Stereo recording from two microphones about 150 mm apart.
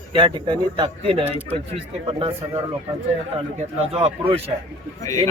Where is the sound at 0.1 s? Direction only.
35° right (ahead or behind).